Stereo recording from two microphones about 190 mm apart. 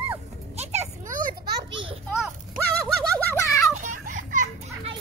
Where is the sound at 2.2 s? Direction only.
5° left (ahead or behind).